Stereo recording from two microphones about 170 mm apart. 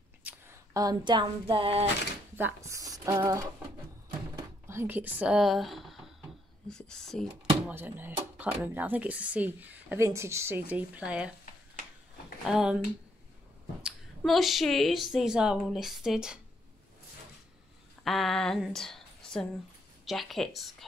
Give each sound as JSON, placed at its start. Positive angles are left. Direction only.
{"t": 0.2, "sound": "a sound", "side_deg": -10}
{"t": 0.7, "sound": "a sound", "side_deg": -25}
{"t": 2.3, "sound": "a woman's voice", "side_deg": -15}
{"t": 7.6, "sound": "speech", "side_deg": -10}
{"t": 12.4, "sound": "a woman's voice", "side_deg": -5}
{"t": 13.8, "sound": "a woman's voice", "side_deg": 0}
{"t": 18.0, "sound": "a woman's voice", "side_deg": 0}